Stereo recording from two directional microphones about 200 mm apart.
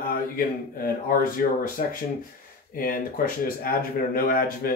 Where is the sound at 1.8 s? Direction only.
35° left (ahead or behind).